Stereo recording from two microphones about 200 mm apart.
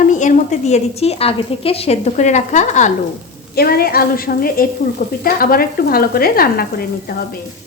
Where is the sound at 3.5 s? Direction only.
50° left (ahead or behind).